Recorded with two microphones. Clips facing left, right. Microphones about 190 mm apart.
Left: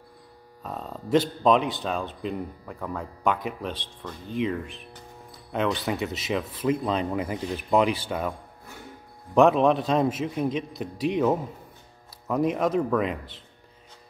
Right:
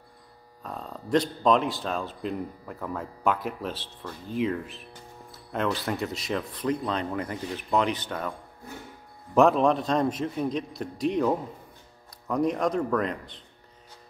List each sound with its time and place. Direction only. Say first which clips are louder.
0.7 s a man's voice: left 2 dB; 5° left (ahead or behind)